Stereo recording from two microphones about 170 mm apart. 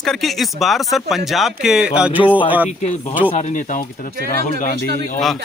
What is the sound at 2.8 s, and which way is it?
Speech, 45° left (ahead or behind).